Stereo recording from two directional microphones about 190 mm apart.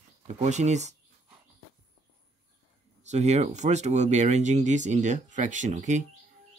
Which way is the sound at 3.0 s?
35° right (ahead or behind).